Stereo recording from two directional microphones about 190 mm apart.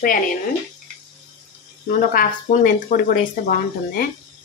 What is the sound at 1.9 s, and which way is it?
Speech, 45° left (ahead or behind).